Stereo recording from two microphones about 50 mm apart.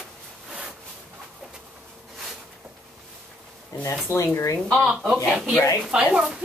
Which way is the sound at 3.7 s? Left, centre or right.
Left.